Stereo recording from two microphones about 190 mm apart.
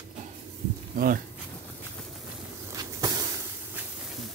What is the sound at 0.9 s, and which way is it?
Speech, 45° right (ahead or behind).